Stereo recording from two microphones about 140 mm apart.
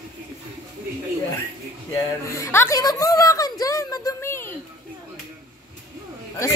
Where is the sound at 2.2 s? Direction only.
20° left (ahead or behind).